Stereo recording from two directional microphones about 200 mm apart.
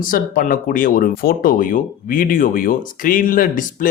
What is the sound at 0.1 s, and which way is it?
Speech, 45° left (ahead or behind).